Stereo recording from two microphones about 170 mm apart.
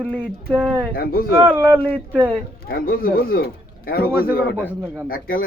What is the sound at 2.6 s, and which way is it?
Speech, 60° left (ahead or behind).